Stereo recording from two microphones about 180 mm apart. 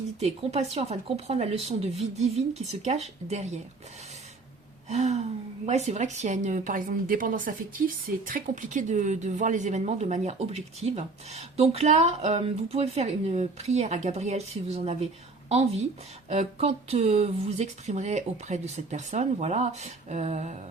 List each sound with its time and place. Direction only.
0.2 s speech: 35° right (ahead or behind)
4.9 s a woman's voice: 40° right (ahead or behind)